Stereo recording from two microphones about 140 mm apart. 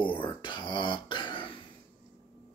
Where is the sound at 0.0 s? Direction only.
35° left (ahead or behind).